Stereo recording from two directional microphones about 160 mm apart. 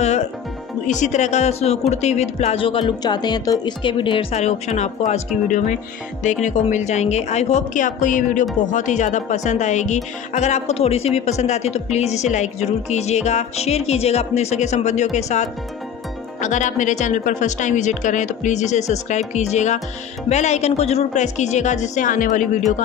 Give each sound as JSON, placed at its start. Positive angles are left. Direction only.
{"t": 0.0, "sound": "music", "side_deg": 45}
{"t": 0.8, "sound": "speech", "side_deg": 50}
{"t": 6.4, "sound": "speech", "side_deg": 45}